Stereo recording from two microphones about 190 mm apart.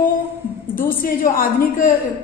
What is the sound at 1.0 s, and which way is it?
Speech, 45° left (ahead or behind).